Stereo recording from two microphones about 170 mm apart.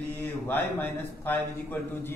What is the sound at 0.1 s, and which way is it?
A man's voice, 10° left (ahead or behind).